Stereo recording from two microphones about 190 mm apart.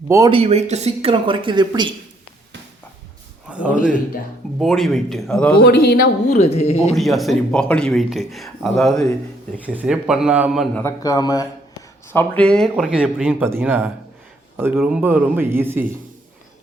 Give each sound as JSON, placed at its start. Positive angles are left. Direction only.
{"t": 0.3, "sound": "speech", "side_deg": -30}
{"t": 3.5, "sound": "speech", "side_deg": -5}
{"t": 5.6, "sound": "a man's voice", "side_deg": 55}
{"t": 6.3, "sound": "speech", "side_deg": 35}
{"t": 6.9, "sound": "speech", "side_deg": 0}
{"t": 10.8, "sound": "a man's voice", "side_deg": 15}